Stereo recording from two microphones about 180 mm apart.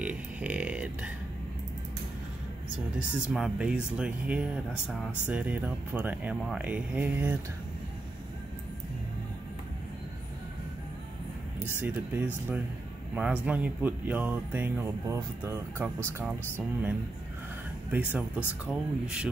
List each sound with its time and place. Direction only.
0.0 s burping: 5° right (ahead or behind)
3.2 s speech: 5° right (ahead or behind)
11.6 s speech: 10° right (ahead or behind)
17.9 s speech: 10° right (ahead or behind)